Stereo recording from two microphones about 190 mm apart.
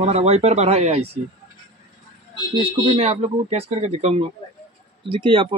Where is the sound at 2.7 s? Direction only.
35° right (ahead or behind).